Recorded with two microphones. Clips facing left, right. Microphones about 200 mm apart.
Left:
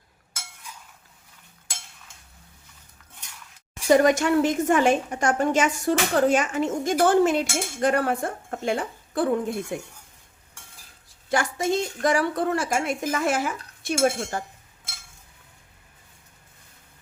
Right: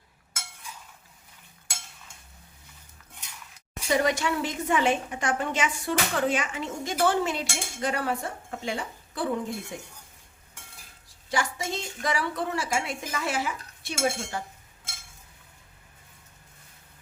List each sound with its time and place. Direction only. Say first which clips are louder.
3.8 s a woman's voice: left 7 dB; 50° left (ahead or behind)
11.3 s a woman's voice: left 6 dB; 55° left (ahead or behind)